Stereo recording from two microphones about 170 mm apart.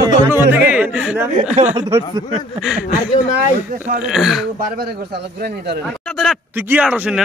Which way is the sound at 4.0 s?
Centre (ahead or behind).